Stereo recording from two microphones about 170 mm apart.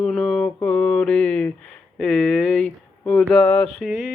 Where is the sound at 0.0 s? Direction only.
5° left (ahead or behind).